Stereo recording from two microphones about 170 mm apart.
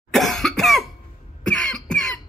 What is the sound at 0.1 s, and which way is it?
Cough, centre (ahead or behind).